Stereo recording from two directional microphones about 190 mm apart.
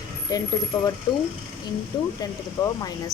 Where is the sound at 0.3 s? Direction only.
20° left (ahead or behind).